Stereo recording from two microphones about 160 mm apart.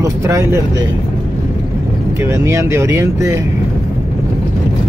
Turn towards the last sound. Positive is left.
turn(degrees=-15)  # may be behind; listen again after turning